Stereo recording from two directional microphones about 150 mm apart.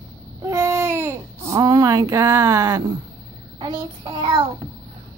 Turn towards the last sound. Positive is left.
turn(degrees=-35)  # may be behind; listen again after turning